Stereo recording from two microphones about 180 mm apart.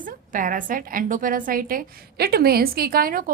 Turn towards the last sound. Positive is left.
turn(degrees=-55)  # may be behind; listen again after turning